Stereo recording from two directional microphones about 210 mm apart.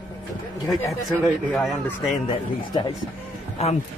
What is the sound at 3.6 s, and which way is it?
Speech, 30° left (ahead or behind).